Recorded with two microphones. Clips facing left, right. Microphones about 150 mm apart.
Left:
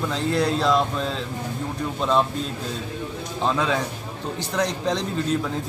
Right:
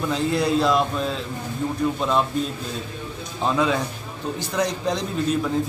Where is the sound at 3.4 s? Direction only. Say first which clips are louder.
Right 2 dB; 5° right (ahead or behind).